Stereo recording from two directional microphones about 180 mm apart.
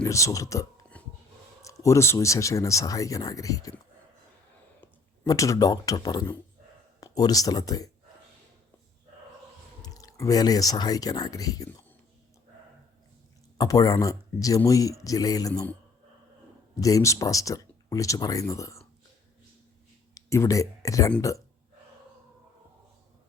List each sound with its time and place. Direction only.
0.0 s speech: 15° left (ahead or behind)
0.9 s a sound: 5° left (ahead or behind)
1.6 s speech: 15° left (ahead or behind)
5.2 s speech: 20° left (ahead or behind)
9.8 s speech: 20° left (ahead or behind)
13.6 s speech: 20° left (ahead or behind)
16.8 s speech: 20° left (ahead or behind)
20.1 s speech: 15° left (ahead or behind)